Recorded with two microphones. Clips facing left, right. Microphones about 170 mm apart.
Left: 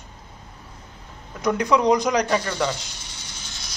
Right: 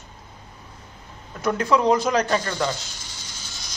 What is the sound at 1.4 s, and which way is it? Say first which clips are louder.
A man's voice: left 1 dB; 15° left (ahead or behind).